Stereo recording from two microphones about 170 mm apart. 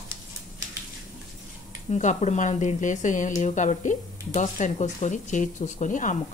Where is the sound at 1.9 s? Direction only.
45° left (ahead or behind).